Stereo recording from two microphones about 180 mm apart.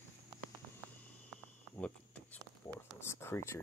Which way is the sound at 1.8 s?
10° left (ahead or behind).